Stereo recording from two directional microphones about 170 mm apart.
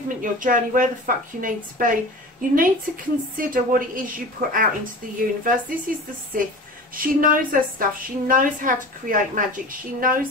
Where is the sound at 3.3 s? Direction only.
55° right (ahead or behind).